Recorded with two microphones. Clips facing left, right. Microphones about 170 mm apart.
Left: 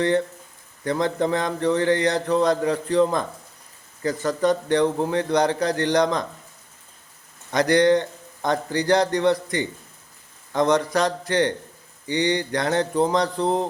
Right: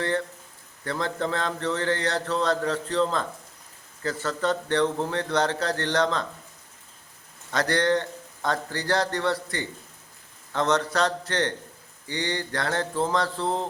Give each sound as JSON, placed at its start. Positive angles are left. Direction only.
{"t": 0.0, "sound": "a man's voice", "side_deg": 20}
{"t": 7.5, "sound": "a man's voice", "side_deg": 15}